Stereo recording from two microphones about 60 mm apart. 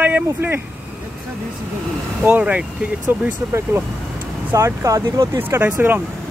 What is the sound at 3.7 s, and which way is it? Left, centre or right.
Speech, right.